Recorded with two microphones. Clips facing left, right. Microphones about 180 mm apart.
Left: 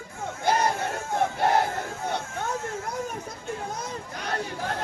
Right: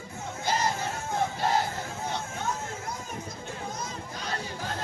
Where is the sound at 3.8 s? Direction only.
60° left (ahead or behind).